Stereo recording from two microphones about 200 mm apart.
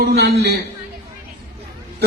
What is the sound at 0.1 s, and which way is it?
Speech, 50° right (ahead or behind).